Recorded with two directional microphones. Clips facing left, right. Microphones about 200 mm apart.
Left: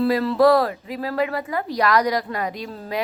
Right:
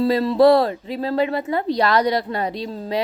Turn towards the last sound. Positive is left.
turn(degrees=-30)  # may be behind; listen again after turning